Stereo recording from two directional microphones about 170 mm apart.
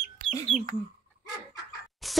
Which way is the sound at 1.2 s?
20° left (ahead or behind).